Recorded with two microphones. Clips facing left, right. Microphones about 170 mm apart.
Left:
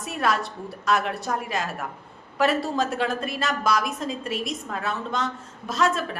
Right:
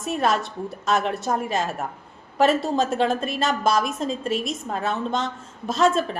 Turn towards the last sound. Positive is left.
turn(degrees=-25)  # may be behind; listen again after turning